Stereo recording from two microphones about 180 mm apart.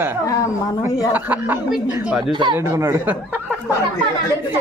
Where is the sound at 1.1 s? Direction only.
10° right (ahead or behind).